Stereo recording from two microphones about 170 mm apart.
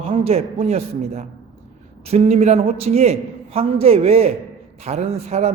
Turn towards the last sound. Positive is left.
turn(degrees=-40)  # may be behind; listen again after turning